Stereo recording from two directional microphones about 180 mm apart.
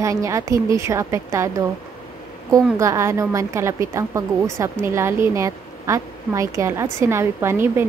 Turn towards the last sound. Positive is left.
turn(degrees=-15)  # may be behind; listen again after turning